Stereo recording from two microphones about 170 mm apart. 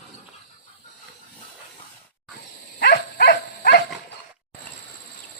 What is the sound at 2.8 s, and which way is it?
Livestock, 70° left (ahead or behind).